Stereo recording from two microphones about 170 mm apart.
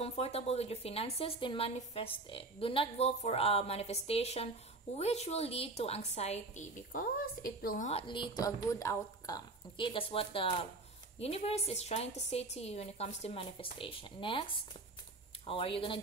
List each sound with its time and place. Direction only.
0.0 s a woman's voice: 35° left (ahead or behind); by 7.9 s 55° left (ahead or behind)
7.9 s a woman's voice: 30° left (ahead or behind)
15.4 s a woman's voice: 30° left (ahead or behind)